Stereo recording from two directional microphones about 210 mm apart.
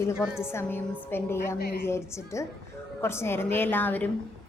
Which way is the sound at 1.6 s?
45° left (ahead or behind).